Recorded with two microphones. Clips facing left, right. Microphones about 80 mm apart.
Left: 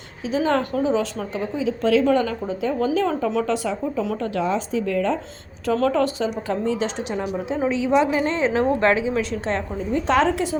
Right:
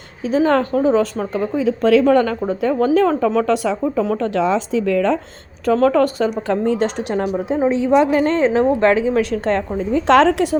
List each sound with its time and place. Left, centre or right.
0.3 s a woman's voice: right
3.4 s speech: right
4.2 s speech: right
5.6 s a woman's voice: right
7.9 s a woman's voice: centre
8.2 s a woman's voice: right
8.5 s speech: right
9.1 s a woman's voice: right
9.7 s a woman's voice: right